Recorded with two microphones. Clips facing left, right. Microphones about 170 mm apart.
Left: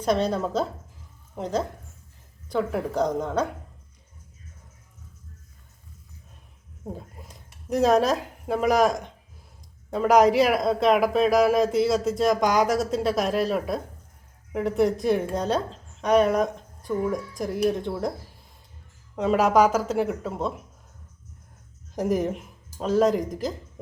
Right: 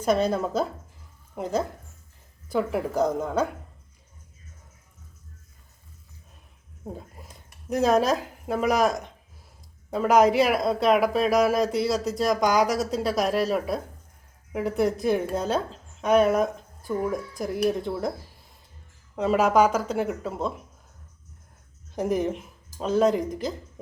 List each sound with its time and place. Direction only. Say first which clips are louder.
0.0 s a woman's voice: right 1 dB; 10° right (ahead or behind)
6.9 s speech: even; centre (ahead or behind)
19.1 s speech: left 1 dB; centre (ahead or behind)
21.9 s speech: left 1 dB; centre (ahead or behind)